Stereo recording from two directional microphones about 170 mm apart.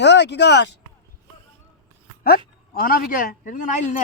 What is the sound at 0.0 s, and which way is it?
Speech, 90° left.